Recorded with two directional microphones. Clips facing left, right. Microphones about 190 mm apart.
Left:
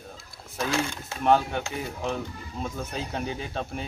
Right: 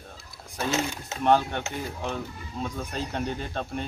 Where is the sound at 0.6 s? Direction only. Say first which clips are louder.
Right 1 dB; 20° right (ahead or behind).